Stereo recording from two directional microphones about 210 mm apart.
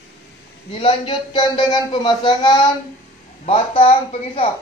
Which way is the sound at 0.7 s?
25° left (ahead or behind).